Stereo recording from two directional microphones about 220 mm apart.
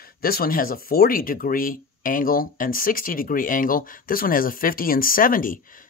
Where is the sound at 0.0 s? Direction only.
40° left (ahead or behind).